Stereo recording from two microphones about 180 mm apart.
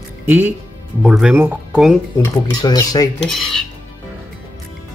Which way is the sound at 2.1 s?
20° left (ahead or behind).